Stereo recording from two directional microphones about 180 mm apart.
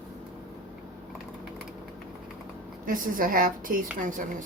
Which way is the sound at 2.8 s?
50° right (ahead or behind).